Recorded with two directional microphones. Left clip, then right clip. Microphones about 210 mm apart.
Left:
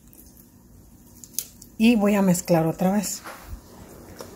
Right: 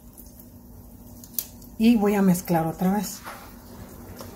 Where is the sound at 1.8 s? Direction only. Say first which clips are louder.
Left 1 dB; 25° left (ahead or behind).